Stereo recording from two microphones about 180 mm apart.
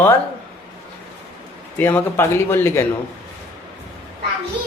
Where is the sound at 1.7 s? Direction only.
10° left (ahead or behind).